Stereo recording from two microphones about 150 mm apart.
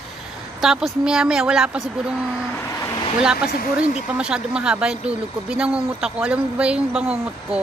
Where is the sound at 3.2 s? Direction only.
5° right (ahead or behind).